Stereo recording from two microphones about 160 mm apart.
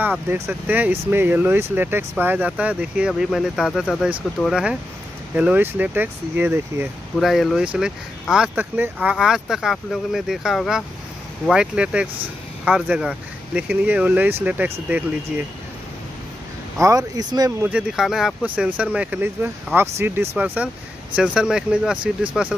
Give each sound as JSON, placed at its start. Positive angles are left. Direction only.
{"t": 0.0, "sound": "speech", "side_deg": -10}
{"t": 7.2, "sound": "speech", "side_deg": 0}
{"t": 16.8, "sound": "speech", "side_deg": -20}
{"t": 17.6, "sound": "speech", "side_deg": -5}